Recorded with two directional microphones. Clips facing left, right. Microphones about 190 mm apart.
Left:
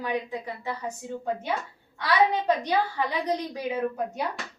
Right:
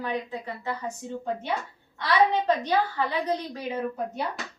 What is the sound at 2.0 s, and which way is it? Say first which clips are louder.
A woman's voice: right 1 dB; 10° left (ahead or behind).